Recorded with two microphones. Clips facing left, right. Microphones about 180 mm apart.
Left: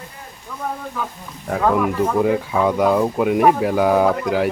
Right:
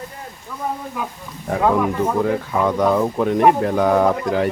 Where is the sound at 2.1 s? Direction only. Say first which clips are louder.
Left 2 dB; 10° left (ahead or behind).